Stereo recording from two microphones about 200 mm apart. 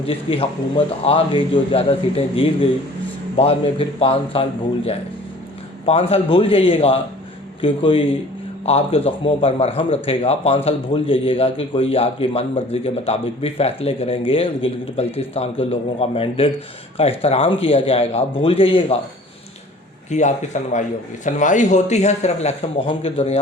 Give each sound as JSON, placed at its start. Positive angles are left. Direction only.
{"t": 0.3, "sound": "a man's voice", "side_deg": 25}
{"t": 5.8, "sound": "a man's voice", "side_deg": 30}
{"t": 20.1, "sound": "speech", "side_deg": 35}